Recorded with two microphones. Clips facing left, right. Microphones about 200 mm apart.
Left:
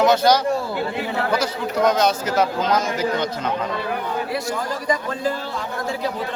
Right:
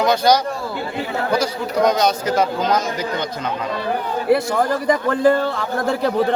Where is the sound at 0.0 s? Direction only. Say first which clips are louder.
Even; 5° left (ahead or behind).